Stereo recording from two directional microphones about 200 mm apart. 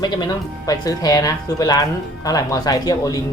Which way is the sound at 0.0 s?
20° left (ahead or behind).